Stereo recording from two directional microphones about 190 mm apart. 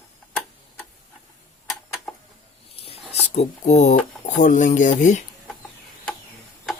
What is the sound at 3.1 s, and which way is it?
Speech, 35° left (ahead or behind).